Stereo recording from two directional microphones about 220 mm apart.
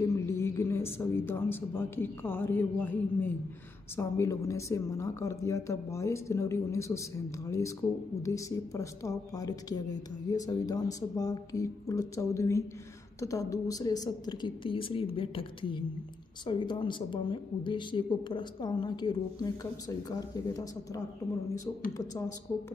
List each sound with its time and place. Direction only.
0.0 s a woman's voice: 15° left (ahead or behind)